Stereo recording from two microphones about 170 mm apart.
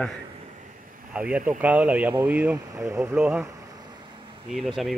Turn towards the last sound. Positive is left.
turn(degrees=0)  # may be behind; listen again after turning